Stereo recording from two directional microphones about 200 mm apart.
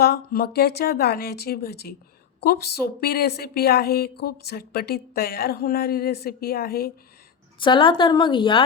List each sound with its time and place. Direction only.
0.0 s a woman's voice: 50° left (ahead or behind)
7.6 s a woman's voice: 25° left (ahead or behind)